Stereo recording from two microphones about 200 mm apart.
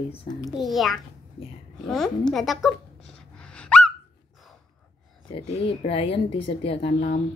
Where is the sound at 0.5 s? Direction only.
Centre (ahead or behind).